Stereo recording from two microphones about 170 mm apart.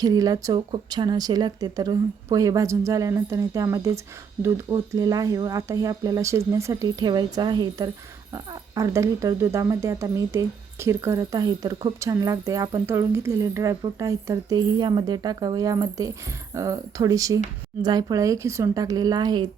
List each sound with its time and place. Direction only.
0.0 s speech: 20° right (ahead or behind)